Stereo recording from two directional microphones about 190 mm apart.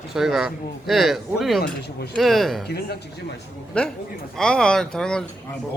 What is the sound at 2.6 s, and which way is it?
Speech, 55° left (ahead or behind).